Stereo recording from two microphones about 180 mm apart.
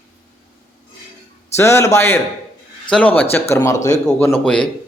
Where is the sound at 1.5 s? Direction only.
15° left (ahead or behind).